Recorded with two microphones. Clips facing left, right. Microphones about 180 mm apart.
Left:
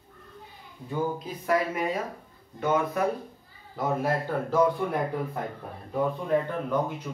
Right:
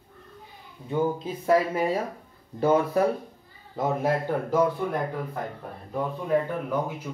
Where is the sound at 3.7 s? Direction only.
20° right (ahead or behind).